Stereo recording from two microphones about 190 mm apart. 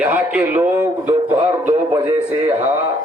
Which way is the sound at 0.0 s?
10° right (ahead or behind).